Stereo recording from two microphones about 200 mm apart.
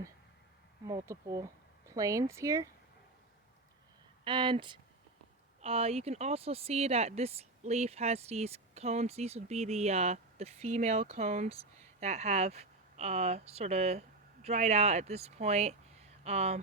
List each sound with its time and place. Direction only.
0.9 s speech: 15° right (ahead or behind)
4.2 s speech: 25° right (ahead or behind)